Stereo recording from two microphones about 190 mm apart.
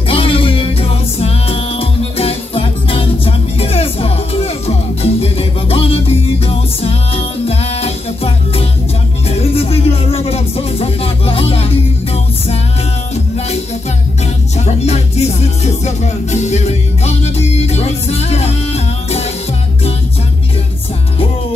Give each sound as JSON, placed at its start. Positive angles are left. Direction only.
{"t": 0.1, "sound": "music", "side_deg": 30}
{"t": 14.6, "sound": "music", "side_deg": 35}